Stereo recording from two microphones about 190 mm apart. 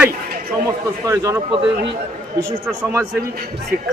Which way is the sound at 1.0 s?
20° right (ahead or behind).